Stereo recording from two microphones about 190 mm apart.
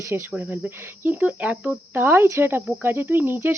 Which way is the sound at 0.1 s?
10° right (ahead or behind).